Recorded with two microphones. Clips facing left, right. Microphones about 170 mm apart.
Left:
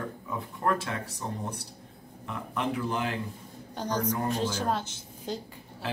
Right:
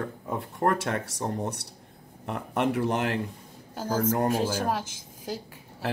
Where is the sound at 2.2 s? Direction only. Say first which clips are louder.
Right 5 dB; 65° right (ahead or behind).